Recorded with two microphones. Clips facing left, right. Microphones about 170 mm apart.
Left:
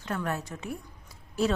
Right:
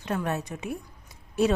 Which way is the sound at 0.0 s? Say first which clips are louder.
Right 3 dB; 20° right (ahead or behind).